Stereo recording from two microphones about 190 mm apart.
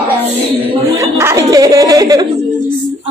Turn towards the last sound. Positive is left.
turn(degrees=-20)  # may be behind; listen again after turning